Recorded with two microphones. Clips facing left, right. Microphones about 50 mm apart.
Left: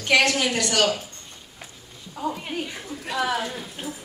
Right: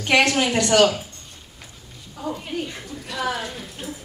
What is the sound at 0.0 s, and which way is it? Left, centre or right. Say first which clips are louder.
Speech: right 2 dB; right.